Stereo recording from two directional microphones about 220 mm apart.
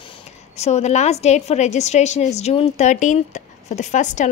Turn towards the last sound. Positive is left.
turn(degrees=35)  # may be behind; listen again after turning